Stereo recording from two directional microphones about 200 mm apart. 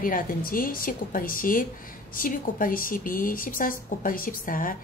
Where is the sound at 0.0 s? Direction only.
45° left (ahead or behind).